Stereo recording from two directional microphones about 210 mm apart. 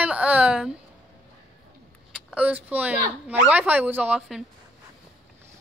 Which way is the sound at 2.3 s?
5° right (ahead or behind).